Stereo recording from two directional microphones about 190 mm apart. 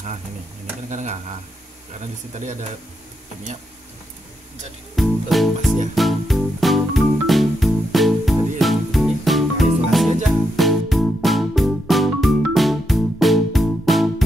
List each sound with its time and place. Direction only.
0.8 s speech: 40° right (ahead or behind)
4.9 s music: centre (ahead or behind)